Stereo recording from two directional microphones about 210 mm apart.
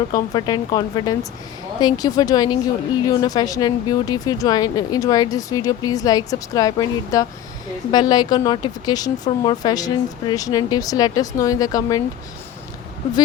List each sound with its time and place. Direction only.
0.1 s speech: 20° left (ahead or behind)